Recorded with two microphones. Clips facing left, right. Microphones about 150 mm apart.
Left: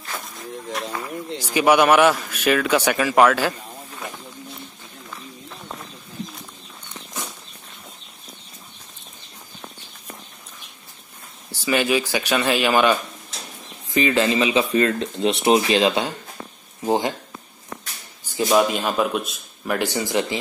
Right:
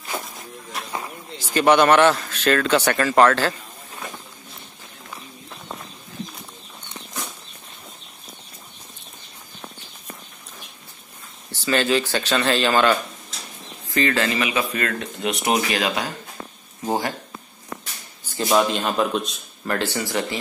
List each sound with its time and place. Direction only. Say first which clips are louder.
0.9 s a sound: even; 25° right (ahead or behind)
1.4 s speech: even; 10° left (ahead or behind)
11.5 s speech: even; 10° left (ahead or behind)
18.5 s speech: left 1 dB; 5° left (ahead or behind)